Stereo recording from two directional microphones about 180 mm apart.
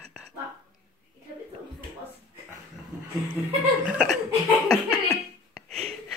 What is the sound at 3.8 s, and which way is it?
Laughter, 5° right (ahead or behind).